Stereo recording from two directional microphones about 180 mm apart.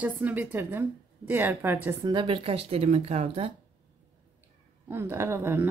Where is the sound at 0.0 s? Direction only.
10° right (ahead or behind).